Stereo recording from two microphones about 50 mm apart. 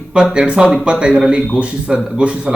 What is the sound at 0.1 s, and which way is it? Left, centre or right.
A man's voice, centre.